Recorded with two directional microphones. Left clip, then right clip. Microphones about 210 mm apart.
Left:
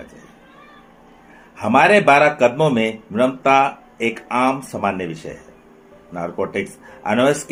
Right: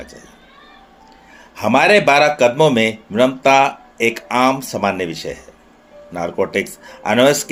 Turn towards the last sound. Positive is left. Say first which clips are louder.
# right 4 dB
turn(degrees=-30)  # may be behind; listen again after turning